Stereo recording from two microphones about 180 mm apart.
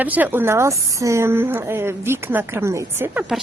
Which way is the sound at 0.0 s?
10° right (ahead or behind).